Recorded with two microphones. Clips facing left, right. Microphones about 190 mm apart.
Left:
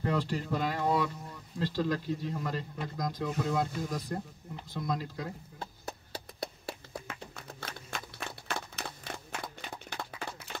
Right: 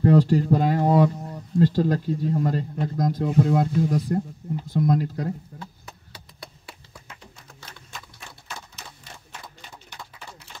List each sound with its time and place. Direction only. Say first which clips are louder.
0.0 s speech: right 13 dB; 45° right (ahead or behind)
5.5 s chop: right 3 dB; 50° right (ahead or behind)
7.9 s a sound: left 3 dB; 60° left (ahead or behind)